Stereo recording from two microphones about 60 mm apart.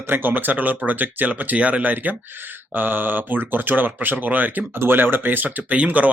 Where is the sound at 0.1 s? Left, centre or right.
Right.